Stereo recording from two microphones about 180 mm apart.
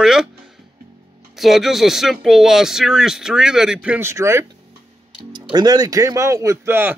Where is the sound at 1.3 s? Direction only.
Centre (ahead or behind).